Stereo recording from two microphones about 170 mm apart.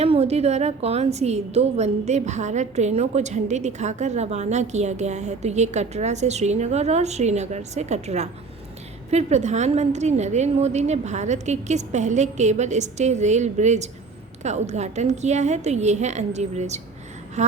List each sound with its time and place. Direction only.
0.0 s a woman's voice: 35° right (ahead or behind)